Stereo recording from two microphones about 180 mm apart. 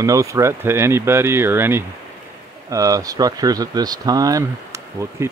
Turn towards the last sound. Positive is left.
turn(degrees=-15)  # may be behind; listen again after turning